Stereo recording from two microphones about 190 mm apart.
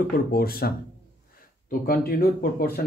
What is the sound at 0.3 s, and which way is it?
Speech, 50° left (ahead or behind).